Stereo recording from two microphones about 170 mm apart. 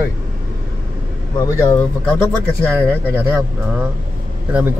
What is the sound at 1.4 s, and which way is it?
A man's voice, 15° left (ahead or behind).